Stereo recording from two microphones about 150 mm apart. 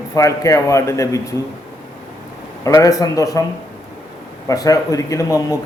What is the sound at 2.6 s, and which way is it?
Speech, 20° left (ahead or behind).